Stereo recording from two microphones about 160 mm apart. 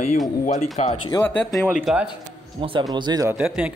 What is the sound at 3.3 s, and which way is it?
Speech, 5° right (ahead or behind).